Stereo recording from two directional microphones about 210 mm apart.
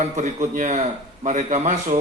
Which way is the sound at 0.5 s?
35° right (ahead or behind).